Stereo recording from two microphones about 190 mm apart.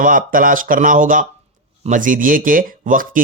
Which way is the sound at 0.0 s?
45° right (ahead or behind).